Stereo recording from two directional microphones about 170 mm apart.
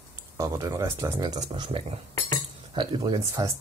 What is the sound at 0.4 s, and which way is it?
Speech, 20° right (ahead or behind).